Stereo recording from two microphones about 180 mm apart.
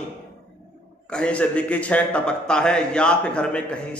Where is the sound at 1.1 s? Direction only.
5° left (ahead or behind).